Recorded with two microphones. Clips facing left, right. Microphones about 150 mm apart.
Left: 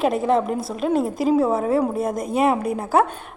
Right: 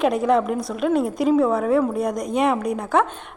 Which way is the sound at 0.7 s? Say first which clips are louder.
Right 1 dB; 35° left (ahead or behind).